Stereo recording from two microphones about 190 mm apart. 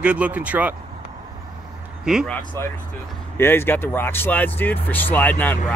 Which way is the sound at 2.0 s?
5° right (ahead or behind).